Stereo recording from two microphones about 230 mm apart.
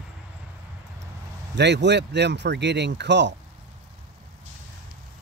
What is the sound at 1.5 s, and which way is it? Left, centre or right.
Speech, right.